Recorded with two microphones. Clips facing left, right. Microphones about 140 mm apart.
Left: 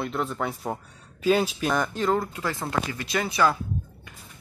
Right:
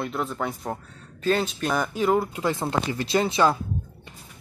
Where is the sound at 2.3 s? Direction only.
20° right (ahead or behind).